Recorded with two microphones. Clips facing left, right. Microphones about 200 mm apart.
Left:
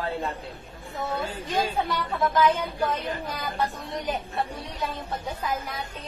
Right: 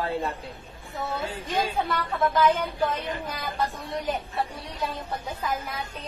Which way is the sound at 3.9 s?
Centre (ahead or behind).